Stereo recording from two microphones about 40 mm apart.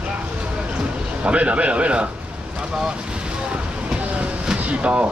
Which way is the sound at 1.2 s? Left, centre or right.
Right.